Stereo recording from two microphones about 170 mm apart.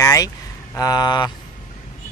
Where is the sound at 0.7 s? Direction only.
25° left (ahead or behind).